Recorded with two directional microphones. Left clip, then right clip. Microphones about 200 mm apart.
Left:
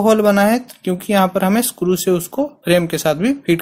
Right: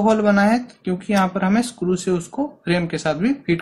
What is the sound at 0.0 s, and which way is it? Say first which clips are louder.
Speech: left 4 dB; 45° left (ahead or behind).